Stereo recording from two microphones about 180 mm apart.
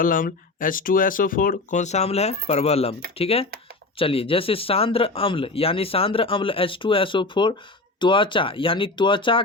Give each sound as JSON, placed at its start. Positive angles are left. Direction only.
{"t": 0.0, "sound": "speech", "side_deg": 50}